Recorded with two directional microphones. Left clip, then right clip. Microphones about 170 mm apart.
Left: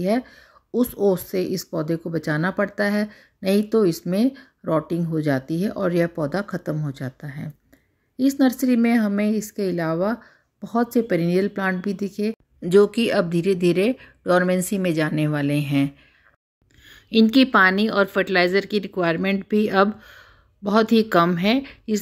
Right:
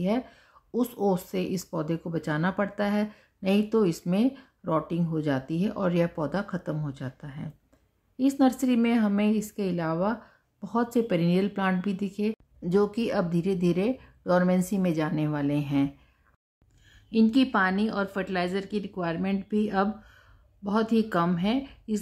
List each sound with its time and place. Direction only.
0.0 s speech: 20° left (ahead or behind)